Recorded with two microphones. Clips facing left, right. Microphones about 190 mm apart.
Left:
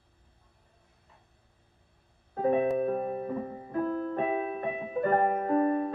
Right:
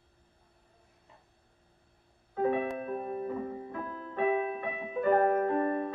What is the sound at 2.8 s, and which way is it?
Music, 40° left (ahead or behind).